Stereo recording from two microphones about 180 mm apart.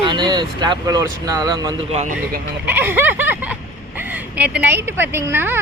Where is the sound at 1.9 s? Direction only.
35° right (ahead or behind).